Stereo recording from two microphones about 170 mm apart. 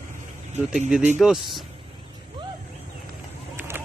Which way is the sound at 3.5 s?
10° right (ahead or behind).